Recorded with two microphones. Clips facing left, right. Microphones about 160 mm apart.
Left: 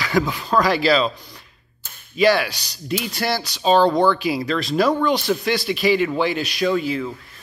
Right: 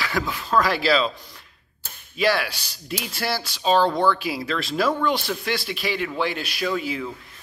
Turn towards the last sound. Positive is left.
turn(degrees=-10)  # may be behind; listen again after turning